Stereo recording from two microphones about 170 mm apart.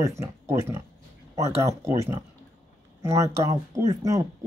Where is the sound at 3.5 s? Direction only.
20° right (ahead or behind).